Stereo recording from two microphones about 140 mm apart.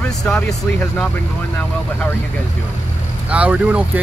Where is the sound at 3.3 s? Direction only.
10° right (ahead or behind).